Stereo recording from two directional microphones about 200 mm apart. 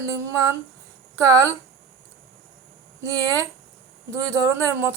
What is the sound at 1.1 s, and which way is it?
Speech, 15° right (ahead or behind).